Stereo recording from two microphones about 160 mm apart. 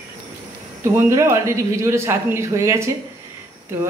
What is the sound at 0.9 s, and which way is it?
Speech, 15° right (ahead or behind).